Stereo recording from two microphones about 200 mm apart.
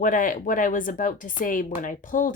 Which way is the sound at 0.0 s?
40° left (ahead or behind).